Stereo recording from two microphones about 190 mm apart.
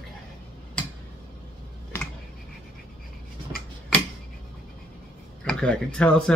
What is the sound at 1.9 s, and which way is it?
Computer keyboard, 15° left (ahead or behind).